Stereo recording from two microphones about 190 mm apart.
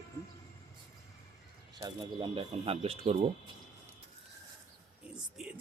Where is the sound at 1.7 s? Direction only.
20° right (ahead or behind).